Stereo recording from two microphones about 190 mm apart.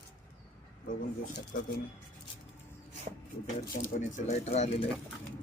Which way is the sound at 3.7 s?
40° left (ahead or behind).